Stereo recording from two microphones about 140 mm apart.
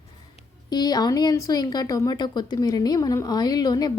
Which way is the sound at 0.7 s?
30° left (ahead or behind).